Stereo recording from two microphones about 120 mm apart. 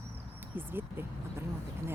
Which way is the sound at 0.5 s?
20° right (ahead or behind).